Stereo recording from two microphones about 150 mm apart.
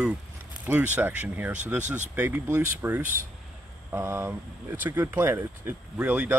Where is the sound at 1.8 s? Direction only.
55° right (ahead or behind).